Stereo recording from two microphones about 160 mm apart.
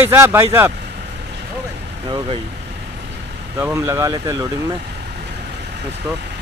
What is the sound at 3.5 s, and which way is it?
Speech, 15° right (ahead or behind).